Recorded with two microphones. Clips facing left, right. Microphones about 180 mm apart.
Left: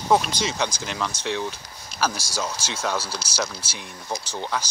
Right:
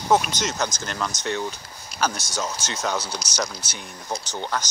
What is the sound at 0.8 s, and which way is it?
Speech, centre (ahead or behind).